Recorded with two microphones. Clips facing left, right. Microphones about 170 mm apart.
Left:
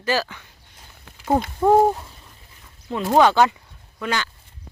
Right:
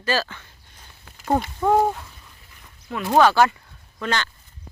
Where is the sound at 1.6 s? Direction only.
25° left (ahead or behind).